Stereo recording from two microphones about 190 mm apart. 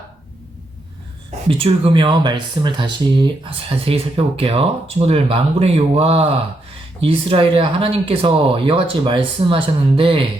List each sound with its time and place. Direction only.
1.5 s speech: 30° right (ahead or behind)